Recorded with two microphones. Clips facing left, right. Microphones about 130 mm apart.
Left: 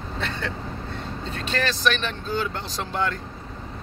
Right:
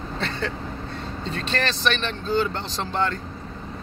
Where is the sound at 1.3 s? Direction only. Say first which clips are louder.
Even; 10° left (ahead or behind).